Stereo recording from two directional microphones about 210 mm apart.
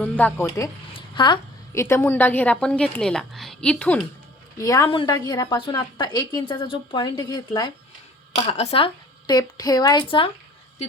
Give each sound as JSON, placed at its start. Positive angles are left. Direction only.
{"t": 0.0, "sound": "a woman's voice", "side_deg": 10}